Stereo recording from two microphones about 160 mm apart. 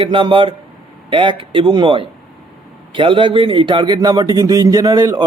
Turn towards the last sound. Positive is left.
turn(degrees=-25)  # may be behind; listen again after turning